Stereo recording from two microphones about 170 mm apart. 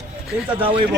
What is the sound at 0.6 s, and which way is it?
Speech, 30° right (ahead or behind).